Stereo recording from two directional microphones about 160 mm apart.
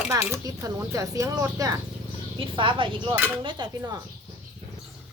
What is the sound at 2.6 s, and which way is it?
Speech, 30° right (ahead or behind).